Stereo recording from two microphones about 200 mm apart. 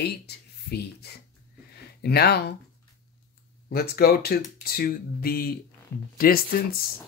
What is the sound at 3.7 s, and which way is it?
Speech, 50° left (ahead or behind).